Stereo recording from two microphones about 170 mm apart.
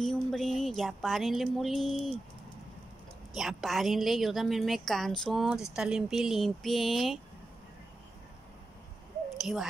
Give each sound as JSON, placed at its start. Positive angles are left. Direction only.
{"t": 0.0, "sound": "a woman's voice", "side_deg": 0}
{"t": 3.3, "sound": "a woman's voice", "side_deg": 0}
{"t": 9.4, "sound": "speech", "side_deg": 0}